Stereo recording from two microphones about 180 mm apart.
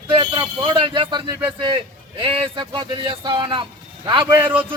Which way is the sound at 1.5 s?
30° right (ahead or behind).